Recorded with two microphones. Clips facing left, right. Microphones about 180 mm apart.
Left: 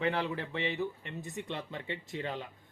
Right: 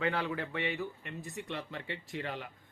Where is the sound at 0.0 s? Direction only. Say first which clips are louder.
Left 1 dB; 25° left (ahead or behind).